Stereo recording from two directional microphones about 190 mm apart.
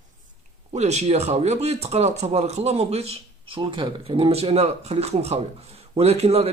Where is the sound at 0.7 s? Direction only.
35° right (ahead or behind).